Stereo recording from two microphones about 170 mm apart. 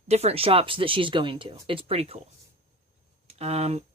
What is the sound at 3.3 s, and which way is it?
Speech, 35° right (ahead or behind).